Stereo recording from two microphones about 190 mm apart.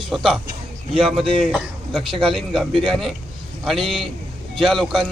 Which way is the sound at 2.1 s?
25° right (ahead or behind).